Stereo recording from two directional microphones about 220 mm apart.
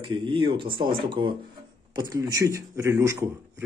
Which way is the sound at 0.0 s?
20° right (ahead or behind).